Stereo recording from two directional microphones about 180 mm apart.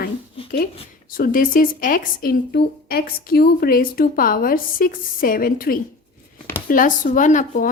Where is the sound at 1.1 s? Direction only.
50° left (ahead or behind).